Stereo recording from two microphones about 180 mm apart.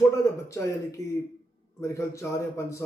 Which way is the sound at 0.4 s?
15° left (ahead or behind).